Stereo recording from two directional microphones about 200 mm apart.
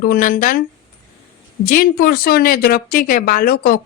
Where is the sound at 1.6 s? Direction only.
45° left (ahead or behind).